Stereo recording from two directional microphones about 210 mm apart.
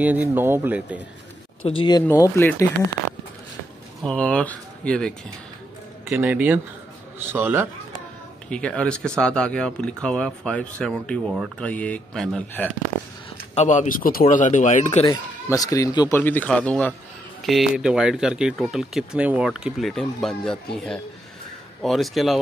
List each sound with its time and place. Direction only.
0.0 s speech: 10° right (ahead or behind)
1.6 s speech: 25° left (ahead or behind)
4.0 s speech: 5° left (ahead or behind)
6.0 s speech: 5° right (ahead or behind)
8.5 s speech: 5° left (ahead or behind)
13.6 s speech: 35° left (ahead or behind)
15.5 s speech: 15° left (ahead or behind); by 22.4 s centre (ahead or behind)